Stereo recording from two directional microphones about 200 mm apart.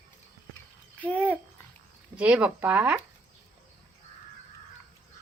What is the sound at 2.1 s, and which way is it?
Speech, 5° right (ahead or behind).